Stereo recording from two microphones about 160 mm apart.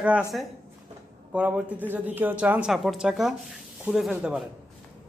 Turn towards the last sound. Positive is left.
turn(degrees=-5)  # may be behind; listen again after turning